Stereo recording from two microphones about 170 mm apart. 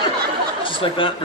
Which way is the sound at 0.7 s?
30° left (ahead or behind).